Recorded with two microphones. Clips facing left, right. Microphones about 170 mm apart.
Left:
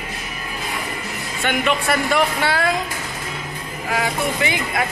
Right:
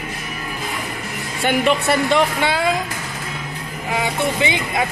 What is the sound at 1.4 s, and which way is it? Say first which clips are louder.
Speech: right 3 dB; 30° right (ahead or behind).